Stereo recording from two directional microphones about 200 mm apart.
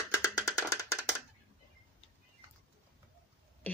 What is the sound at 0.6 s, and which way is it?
Music, 15° left (ahead or behind).